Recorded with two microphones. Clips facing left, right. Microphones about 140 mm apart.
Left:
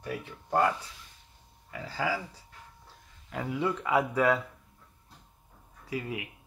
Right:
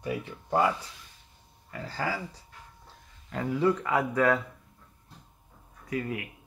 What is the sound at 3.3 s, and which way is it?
Speech, 5° left (ahead or behind).